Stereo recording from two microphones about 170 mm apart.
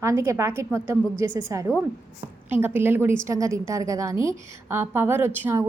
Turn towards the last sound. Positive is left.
turn(degrees=-15)  # may be behind; listen again after turning